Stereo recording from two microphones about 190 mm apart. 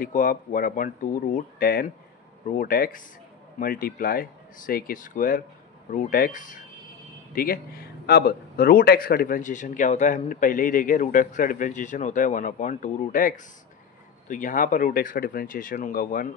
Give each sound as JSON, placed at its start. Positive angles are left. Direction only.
{"t": 0.0, "sound": "a man's voice", "side_deg": 45}